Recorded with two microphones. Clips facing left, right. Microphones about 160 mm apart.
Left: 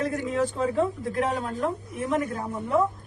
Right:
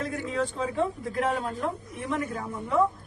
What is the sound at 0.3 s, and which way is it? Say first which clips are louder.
Speech: left 2 dB; centre (ahead or behind).